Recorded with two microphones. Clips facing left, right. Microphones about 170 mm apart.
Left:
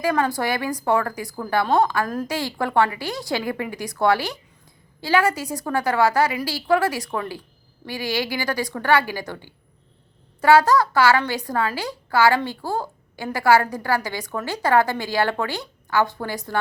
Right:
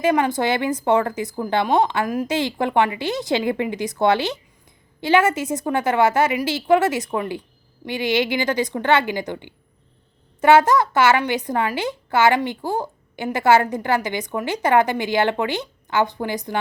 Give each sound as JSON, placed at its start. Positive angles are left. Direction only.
{"t": 0.0, "sound": "a child's voice", "side_deg": -20}